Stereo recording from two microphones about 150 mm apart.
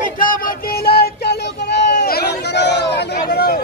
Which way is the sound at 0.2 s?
70° left (ahead or behind).